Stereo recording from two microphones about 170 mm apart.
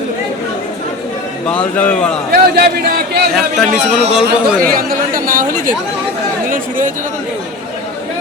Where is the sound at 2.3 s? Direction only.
65° right (ahead or behind).